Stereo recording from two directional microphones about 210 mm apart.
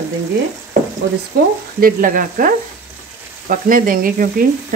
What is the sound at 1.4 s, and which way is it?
Speech, 45° right (ahead or behind).